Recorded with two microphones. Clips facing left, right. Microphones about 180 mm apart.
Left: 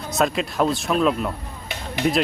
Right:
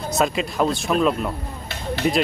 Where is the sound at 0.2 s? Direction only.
Centre (ahead or behind).